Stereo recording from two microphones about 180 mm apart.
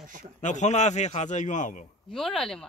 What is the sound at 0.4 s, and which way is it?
A man's voice, 40° left (ahead or behind).